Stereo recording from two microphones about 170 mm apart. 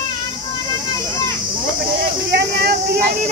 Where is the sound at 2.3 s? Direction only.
70° right (ahead or behind).